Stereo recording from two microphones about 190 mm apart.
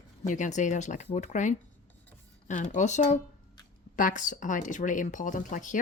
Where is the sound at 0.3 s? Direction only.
40° left (ahead or behind).